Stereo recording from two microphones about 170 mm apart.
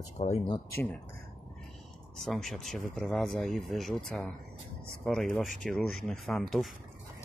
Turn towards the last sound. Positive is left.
turn(degrees=0)  # may be behind; listen again after turning